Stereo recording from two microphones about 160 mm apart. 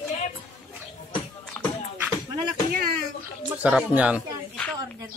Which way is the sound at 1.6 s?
Centre (ahead or behind).